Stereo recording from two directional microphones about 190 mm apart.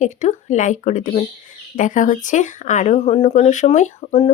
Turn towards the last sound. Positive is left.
turn(degrees=35)  # may be behind; listen again after turning